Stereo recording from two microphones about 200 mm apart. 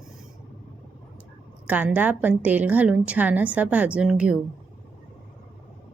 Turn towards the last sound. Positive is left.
turn(degrees=-5)  # may be behind; listen again after turning